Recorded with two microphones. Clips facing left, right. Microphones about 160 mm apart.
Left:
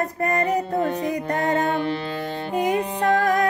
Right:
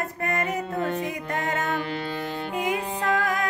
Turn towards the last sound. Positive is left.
turn(degrees=40)  # may be behind; listen again after turning